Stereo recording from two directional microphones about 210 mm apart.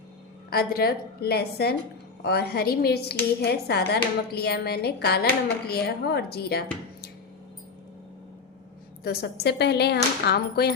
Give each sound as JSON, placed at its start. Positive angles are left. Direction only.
{"t": 0.5, "sound": "a woman's voice", "side_deg": 45}
{"t": 9.0, "sound": "a woman's voice", "side_deg": 50}